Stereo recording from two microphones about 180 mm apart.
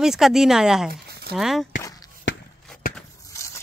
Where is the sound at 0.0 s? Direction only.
Centre (ahead or behind).